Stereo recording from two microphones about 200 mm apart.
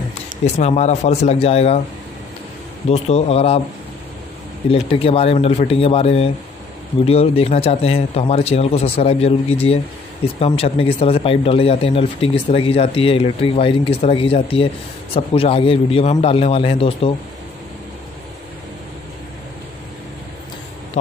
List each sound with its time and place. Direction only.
0.6 s speech: 35° left (ahead or behind)
2.9 s speech: 30° left (ahead or behind)
4.6 s speech: 30° left (ahead or behind)